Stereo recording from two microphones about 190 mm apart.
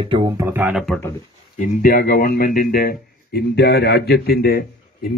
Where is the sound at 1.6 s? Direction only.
45° left (ahead or behind).